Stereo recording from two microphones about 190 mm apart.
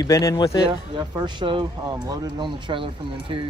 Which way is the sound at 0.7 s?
25° right (ahead or behind).